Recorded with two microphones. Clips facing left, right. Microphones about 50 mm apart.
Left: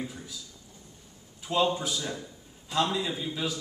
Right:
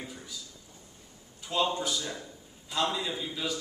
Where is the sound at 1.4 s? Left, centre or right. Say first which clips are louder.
Left 3 dB; centre.